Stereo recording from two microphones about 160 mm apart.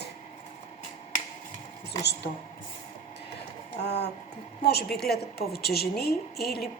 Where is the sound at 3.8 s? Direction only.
90° left.